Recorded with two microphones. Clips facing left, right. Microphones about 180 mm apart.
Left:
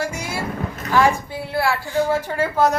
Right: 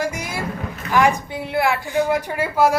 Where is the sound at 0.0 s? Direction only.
15° right (ahead or behind).